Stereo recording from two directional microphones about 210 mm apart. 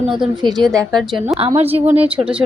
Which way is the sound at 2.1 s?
5° right (ahead or behind).